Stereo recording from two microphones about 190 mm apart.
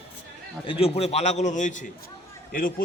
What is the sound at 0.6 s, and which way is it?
A man's voice, 30° left (ahead or behind).